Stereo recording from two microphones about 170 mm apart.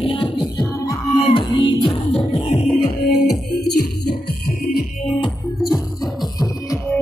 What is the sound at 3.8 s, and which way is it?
Music, 60° left (ahead or behind).